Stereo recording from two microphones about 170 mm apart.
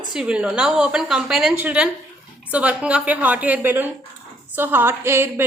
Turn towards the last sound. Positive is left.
turn(degrees=-15)  # may be behind; listen again after turning